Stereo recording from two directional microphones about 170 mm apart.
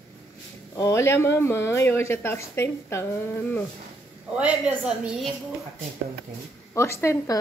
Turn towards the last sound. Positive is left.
turn(degrees=15)  # may be behind; listen again after turning